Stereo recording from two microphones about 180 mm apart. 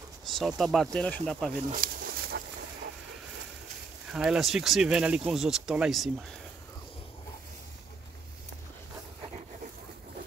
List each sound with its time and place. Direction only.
0.2 s speech: centre (ahead or behind)
1.7 s a sound: 55° right (ahead or behind)
4.1 s speech: 5° right (ahead or behind)